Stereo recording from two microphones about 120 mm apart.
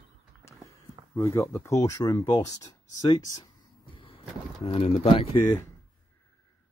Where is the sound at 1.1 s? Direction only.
25° left (ahead or behind).